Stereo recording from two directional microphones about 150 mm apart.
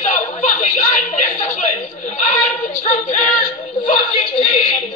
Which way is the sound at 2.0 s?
55° left (ahead or behind).